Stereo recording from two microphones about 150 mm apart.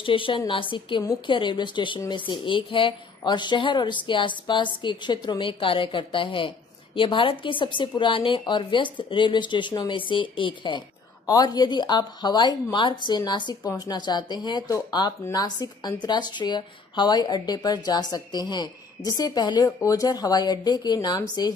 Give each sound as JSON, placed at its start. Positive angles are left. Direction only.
{"t": 0.0, "sound": "a woman's voice", "side_deg": 35}